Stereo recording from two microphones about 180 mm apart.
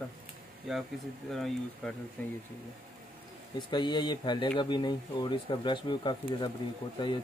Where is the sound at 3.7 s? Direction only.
25° left (ahead or behind).